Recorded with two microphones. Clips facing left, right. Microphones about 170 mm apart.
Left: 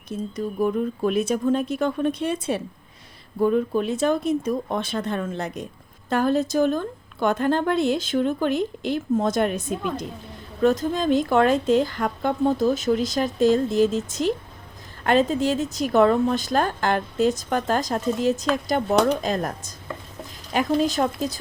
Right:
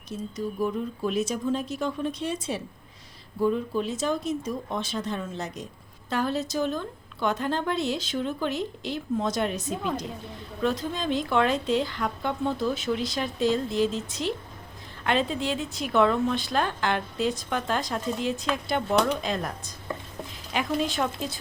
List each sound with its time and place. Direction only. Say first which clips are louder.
0.1 s speech: left 4 dB; 55° left (ahead or behind)